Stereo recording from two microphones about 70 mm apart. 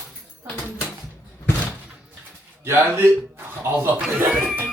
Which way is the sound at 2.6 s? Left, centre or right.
Right.